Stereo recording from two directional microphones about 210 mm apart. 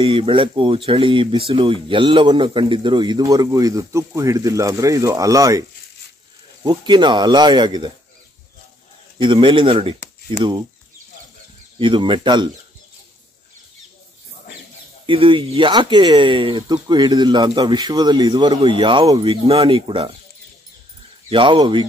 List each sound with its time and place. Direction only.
0.0 s speech: 25° right (ahead or behind)
9.2 s speech: 25° right (ahead or behind)
11.8 s speech: 25° right (ahead or behind)
15.0 s speech: 25° right (ahead or behind)
21.3 s speech: 25° right (ahead or behind)